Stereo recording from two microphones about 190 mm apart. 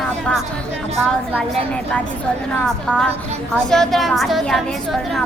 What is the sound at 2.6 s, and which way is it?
A woman's voice, centre (ahead or behind).